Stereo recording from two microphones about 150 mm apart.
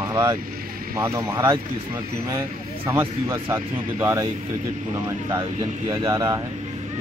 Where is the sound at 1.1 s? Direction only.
20° right (ahead or behind).